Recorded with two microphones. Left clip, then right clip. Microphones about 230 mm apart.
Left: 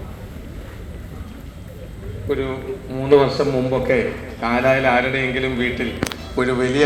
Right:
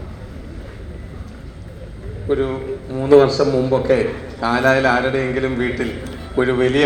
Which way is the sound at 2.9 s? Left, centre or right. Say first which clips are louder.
Right 3 dB; right.